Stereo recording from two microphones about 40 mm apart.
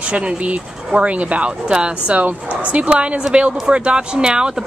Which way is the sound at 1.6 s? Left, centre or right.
Right.